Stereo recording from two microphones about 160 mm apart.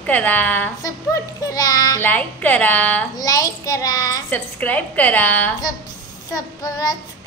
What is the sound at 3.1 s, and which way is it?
Child singing, 20° left (ahead or behind).